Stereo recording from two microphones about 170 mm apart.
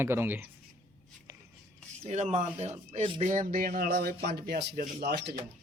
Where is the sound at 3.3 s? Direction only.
55° right (ahead or behind); by 5.4 s 75° right (ahead or behind).